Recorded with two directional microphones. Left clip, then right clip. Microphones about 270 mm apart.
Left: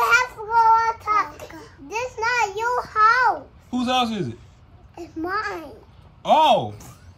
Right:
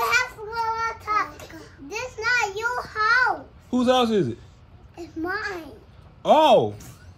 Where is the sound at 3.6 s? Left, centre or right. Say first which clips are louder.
Right 2 dB; left.